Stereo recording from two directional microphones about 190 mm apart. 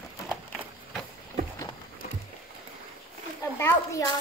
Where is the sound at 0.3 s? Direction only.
5° right (ahead or behind).